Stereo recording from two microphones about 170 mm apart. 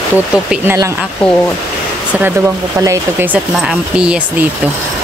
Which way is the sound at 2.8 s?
15° right (ahead or behind).